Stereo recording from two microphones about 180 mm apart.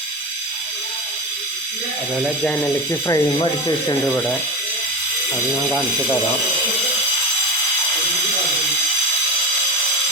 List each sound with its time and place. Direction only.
3.1 s ratchet: 25° left (ahead or behind)